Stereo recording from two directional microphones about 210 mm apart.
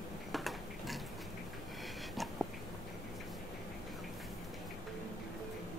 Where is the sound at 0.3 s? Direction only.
Centre (ahead or behind).